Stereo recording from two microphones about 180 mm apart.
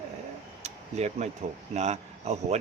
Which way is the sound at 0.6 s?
40° right (ahead or behind).